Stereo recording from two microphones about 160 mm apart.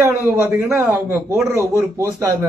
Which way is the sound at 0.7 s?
15° right (ahead or behind).